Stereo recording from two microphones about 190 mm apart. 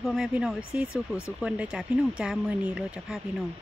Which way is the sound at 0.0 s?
Centre (ahead or behind).